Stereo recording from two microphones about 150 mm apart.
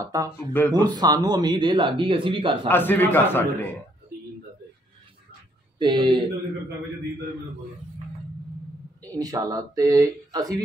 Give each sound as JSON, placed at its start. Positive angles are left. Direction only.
{"t": 0.0, "sound": "speech", "side_deg": -25}
{"t": 0.5, "sound": "a man's voice", "side_deg": 15}
{"t": 0.8, "sound": "speech", "side_deg": -25}
{"t": 2.7, "sound": "a man's voice", "side_deg": 15}
{"t": 5.8, "sound": "speech", "side_deg": -30}
{"t": 9.1, "sound": "speech", "side_deg": -25}